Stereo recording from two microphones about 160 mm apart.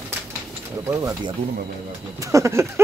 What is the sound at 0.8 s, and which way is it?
Speech, 20° right (ahead or behind).